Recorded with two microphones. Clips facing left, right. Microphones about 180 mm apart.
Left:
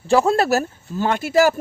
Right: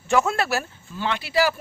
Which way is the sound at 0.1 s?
35° left (ahead or behind).